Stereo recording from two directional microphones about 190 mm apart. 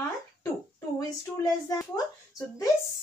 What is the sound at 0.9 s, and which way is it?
Speech, 20° left (ahead or behind).